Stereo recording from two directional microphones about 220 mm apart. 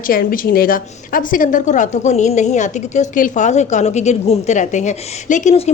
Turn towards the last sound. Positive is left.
turn(degrees=30)  # may be behind; listen again after turning